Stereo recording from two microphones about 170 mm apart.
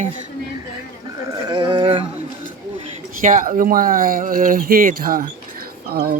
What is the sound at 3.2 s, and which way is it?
Speech, 50° right (ahead or behind).